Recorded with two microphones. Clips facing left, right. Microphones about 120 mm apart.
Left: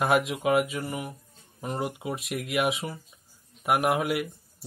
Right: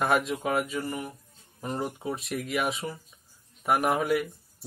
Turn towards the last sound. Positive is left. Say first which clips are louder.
# even
turn(degrees=5)  # may be behind; listen again after turning